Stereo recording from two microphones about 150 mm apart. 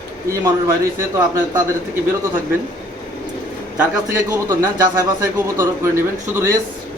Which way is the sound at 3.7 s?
15° right (ahead or behind).